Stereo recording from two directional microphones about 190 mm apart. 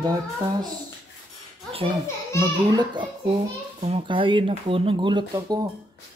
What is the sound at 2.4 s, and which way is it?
Speech, 20° right (ahead or behind).